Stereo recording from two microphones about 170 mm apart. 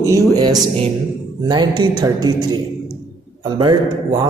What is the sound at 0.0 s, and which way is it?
Speech, 20° right (ahead or behind).